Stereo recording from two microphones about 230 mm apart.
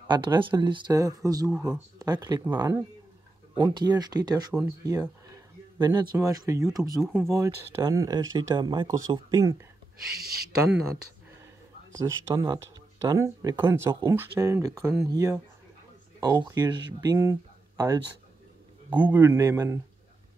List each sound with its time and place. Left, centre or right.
0.1 s speech: centre
10.1 s speech: right
12.4 s speech: centre